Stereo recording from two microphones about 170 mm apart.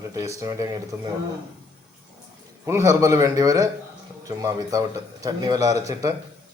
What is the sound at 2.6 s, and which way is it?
A man's voice, 15° right (ahead or behind).